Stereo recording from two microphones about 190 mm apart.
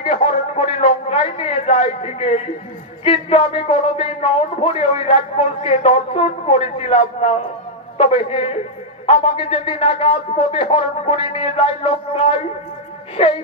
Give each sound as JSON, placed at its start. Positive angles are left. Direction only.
{"t": 0.0, "sound": "a man's voice", "side_deg": 35}